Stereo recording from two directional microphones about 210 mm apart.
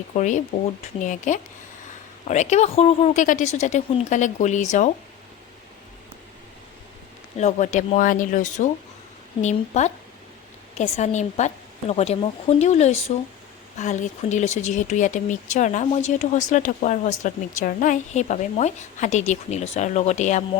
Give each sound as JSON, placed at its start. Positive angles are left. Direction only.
{"t": 0.1, "sound": "speech", "side_deg": 35}
{"t": 7.3, "sound": "speech", "side_deg": 35}